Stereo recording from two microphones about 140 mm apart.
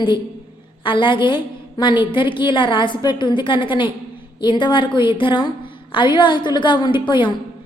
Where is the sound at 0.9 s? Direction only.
35° left (ahead or behind).